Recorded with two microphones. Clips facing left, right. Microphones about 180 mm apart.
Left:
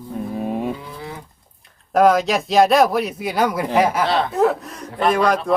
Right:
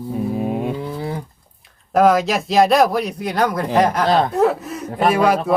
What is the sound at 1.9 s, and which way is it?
Speech, centre (ahead or behind).